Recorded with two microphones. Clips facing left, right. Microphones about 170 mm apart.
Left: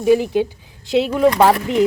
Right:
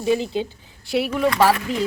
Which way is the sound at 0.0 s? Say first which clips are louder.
Left 6 dB; 15° left (ahead or behind).